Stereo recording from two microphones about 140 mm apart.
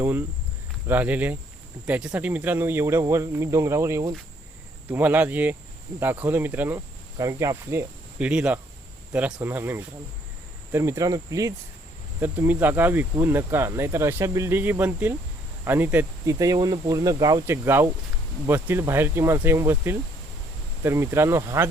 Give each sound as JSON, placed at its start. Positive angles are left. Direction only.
{"t": 0.0, "sound": "speech", "side_deg": -15}
{"t": 8.3, "sound": "speech", "side_deg": -10}
{"t": 12.2, "sound": "speech", "side_deg": -15}